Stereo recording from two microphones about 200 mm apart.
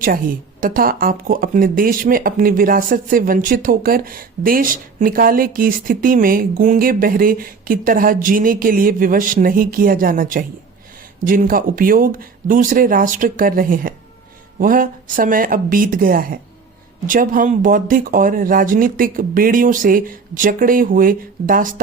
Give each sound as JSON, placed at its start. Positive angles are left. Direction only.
{"t": 0.0, "sound": "a woman's voice", "side_deg": -45}